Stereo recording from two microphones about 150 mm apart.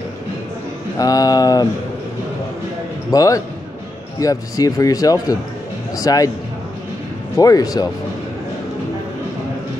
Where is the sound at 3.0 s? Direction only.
25° left (ahead or behind).